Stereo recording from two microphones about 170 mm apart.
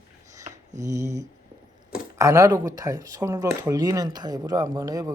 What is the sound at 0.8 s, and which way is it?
Speech, 20° right (ahead or behind).